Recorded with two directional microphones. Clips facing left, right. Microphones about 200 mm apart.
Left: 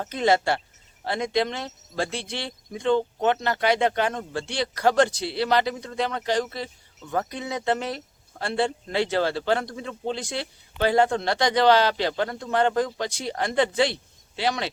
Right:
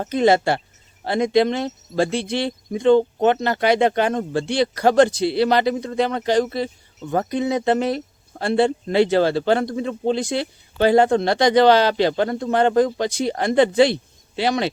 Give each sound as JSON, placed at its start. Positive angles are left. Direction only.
{"t": 0.1, "sound": "speech", "side_deg": -20}
{"t": 4.1, "sound": "a man's voice", "side_deg": -30}
{"t": 4.4, "sound": "speech", "side_deg": -20}
{"t": 7.0, "sound": "a man's voice", "side_deg": -30}
{"t": 7.3, "sound": "speech", "side_deg": -20}